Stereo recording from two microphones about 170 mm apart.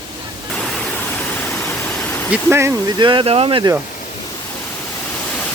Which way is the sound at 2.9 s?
30° right (ahead or behind).